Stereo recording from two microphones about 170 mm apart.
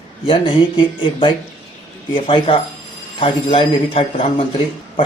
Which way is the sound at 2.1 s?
30° left (ahead or behind).